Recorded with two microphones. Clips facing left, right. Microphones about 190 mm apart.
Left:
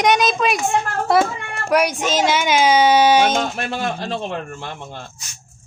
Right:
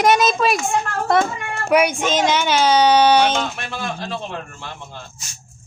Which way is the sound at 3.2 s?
45° left (ahead or behind).